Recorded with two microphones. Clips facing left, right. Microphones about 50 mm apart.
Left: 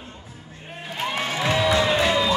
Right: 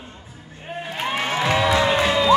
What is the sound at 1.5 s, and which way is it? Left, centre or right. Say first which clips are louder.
Music: right 1 dB; centre.